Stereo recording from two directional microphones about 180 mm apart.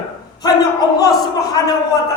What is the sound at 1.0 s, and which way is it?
Speech, 20° left (ahead or behind).